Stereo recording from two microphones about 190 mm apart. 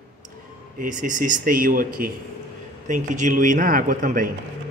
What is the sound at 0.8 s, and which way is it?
Speech, 45° right (ahead or behind).